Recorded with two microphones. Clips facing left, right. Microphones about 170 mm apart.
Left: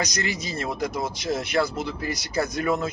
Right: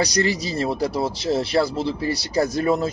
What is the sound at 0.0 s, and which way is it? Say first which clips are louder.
Speech: right 7 dB; 35° right (ahead or behind).